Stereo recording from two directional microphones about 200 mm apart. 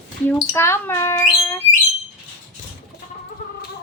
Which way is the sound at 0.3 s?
15° left (ahead or behind).